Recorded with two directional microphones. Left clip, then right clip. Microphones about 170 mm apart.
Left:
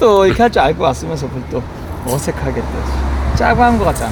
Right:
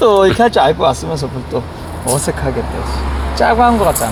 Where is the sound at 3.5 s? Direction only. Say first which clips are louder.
Right 1 dB; 20° right (ahead or behind).